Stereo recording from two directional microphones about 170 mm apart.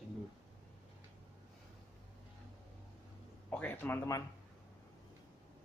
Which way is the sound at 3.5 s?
10° left (ahead or behind).